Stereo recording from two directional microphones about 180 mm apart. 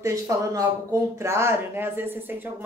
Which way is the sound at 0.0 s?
15° right (ahead or behind).